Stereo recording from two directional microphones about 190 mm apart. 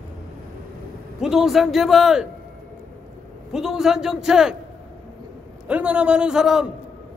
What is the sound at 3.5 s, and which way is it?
Speech, centre (ahead or behind).